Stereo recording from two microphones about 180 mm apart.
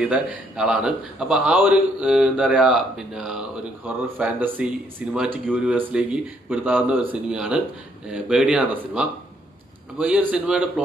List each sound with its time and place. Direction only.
0.0 s a man's voice: 10° right (ahead or behind)